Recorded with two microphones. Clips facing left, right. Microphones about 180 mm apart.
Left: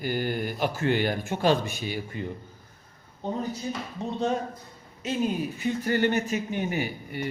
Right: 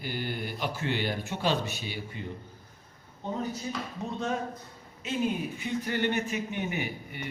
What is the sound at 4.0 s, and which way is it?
Speech, 30° left (ahead or behind).